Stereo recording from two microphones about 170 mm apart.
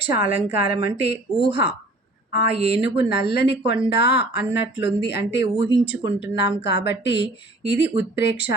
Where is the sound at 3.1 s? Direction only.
70° left (ahead or behind).